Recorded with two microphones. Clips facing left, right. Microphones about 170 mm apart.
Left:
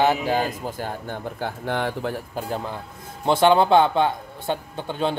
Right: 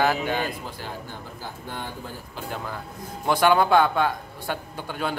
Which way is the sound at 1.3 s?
70° left (ahead or behind).